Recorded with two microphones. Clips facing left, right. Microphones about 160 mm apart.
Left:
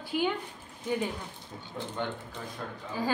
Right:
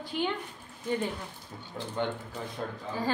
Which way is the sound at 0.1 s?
5° left (ahead or behind).